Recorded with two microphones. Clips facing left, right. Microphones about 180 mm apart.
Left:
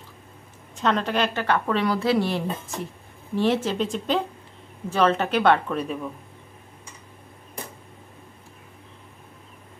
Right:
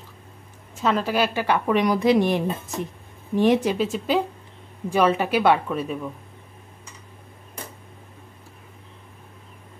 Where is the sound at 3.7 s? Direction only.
5° right (ahead or behind).